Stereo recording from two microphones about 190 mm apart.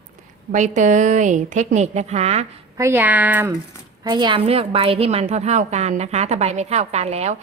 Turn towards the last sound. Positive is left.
turn(degrees=-35)  # may be behind; listen again after turning